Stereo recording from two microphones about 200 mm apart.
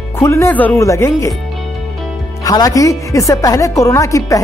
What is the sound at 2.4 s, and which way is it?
Speech, 15° left (ahead or behind).